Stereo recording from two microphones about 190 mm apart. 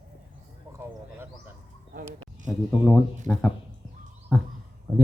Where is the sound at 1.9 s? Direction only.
40° right (ahead or behind).